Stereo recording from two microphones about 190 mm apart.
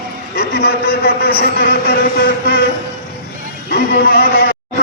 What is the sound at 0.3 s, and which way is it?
A man's voice, 60° left (ahead or behind).